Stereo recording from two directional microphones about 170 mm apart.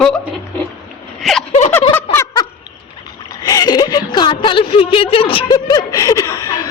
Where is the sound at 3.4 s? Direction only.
25° left (ahead or behind).